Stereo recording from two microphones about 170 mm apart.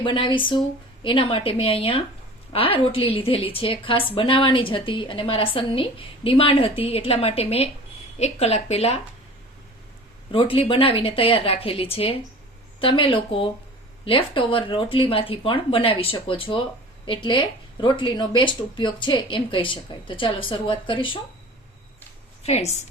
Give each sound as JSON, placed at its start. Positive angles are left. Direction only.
{"t": 0.0, "sound": "a woman's voice", "side_deg": 30}
{"t": 10.3, "sound": "a woman's voice", "side_deg": 30}
{"t": 22.4, "sound": "a woman's voice", "side_deg": 35}